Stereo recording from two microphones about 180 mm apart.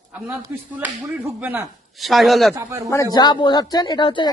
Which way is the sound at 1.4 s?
10° right (ahead or behind).